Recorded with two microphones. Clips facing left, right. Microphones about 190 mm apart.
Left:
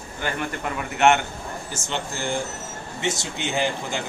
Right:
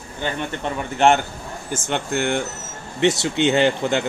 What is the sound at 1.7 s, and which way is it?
Speech, 60° right (ahead or behind).